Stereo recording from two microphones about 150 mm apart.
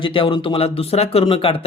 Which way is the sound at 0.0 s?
35° left (ahead or behind).